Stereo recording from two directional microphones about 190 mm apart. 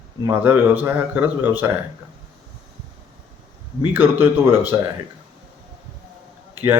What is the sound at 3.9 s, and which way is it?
Speech, 10° right (ahead or behind).